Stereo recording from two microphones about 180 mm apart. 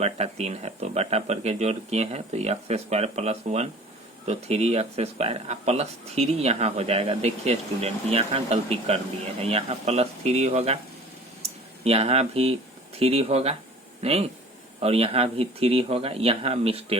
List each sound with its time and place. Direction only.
0.0 s speech: 35° right (ahead or behind)